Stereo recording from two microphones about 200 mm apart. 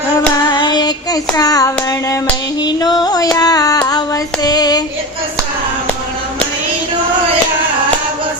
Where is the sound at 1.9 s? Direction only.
15° left (ahead or behind).